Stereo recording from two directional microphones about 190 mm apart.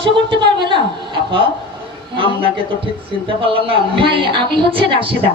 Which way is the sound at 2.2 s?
30° right (ahead or behind).